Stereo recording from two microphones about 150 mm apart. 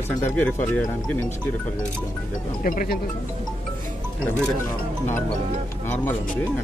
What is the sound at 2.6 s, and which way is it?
Speech, 75° left (ahead or behind).